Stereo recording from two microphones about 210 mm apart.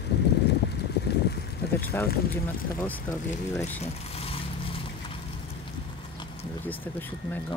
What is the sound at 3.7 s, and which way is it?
Vehicle, 30° left (ahead or behind).